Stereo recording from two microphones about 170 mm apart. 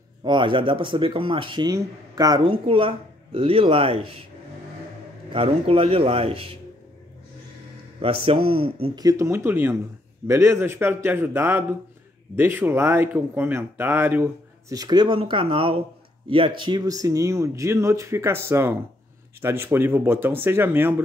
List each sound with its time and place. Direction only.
0.2 s speech: 30° right (ahead or behind)
5.3 s speech: 35° right (ahead or behind)
8.0 s speech: 35° right (ahead or behind)
8.9 s speech: 20° right (ahead or behind)